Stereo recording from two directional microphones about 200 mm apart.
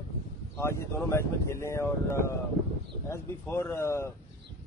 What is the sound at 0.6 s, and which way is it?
Speech, 15° left (ahead or behind).